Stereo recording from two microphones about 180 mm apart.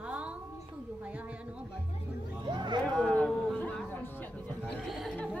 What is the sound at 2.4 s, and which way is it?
Speech, 25° right (ahead or behind).